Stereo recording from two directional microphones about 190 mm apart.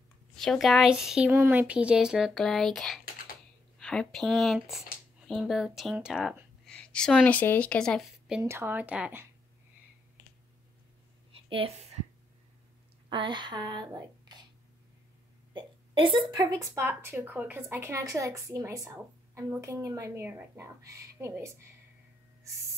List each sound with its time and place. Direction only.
0.4 s speech: centre (ahead or behind)
8.4 s speech: 15° right (ahead or behind)
11.4 s a woman's voice: 30° right (ahead or behind)
13.1 s speech: 25° right (ahead or behind)
15.5 s speech: 25° right (ahead or behind)